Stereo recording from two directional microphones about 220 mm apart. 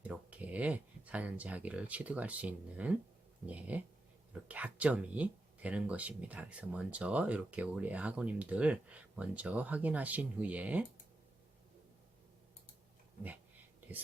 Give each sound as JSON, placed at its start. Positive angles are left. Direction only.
{"t": 0.0, "sound": "speech", "side_deg": -5}